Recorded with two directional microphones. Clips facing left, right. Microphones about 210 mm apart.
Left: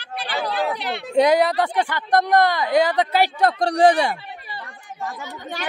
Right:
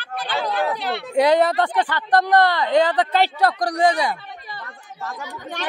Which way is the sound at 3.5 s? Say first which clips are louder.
Left 3 dB; 25° left (ahead or behind).